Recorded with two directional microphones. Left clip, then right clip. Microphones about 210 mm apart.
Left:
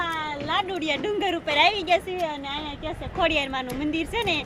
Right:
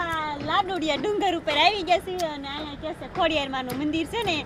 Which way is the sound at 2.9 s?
Centre (ahead or behind).